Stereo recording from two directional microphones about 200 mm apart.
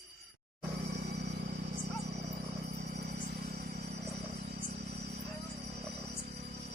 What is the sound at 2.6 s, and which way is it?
Vehicle, 40° right (ahead or behind).